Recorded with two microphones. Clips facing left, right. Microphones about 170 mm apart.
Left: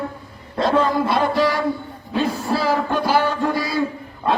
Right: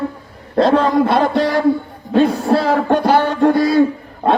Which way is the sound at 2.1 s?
55° right (ahead or behind).